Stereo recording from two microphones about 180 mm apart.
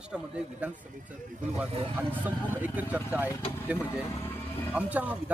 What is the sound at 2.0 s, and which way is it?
Speech, 10° right (ahead or behind).